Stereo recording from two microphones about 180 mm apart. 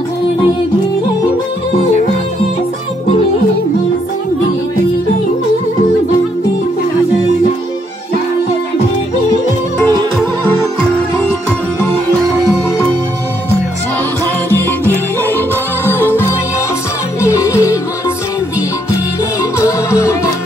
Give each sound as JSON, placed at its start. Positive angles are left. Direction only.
{"t": 10.1, "sound": "music", "side_deg": 5}
{"t": 14.6, "sound": "music", "side_deg": 10}
{"t": 19.6, "sound": "music", "side_deg": 15}